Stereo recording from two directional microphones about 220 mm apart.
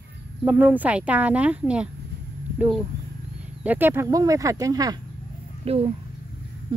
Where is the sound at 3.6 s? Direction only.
10° right (ahead or behind).